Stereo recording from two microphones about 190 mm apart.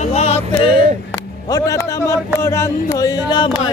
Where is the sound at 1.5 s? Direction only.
15° left (ahead or behind).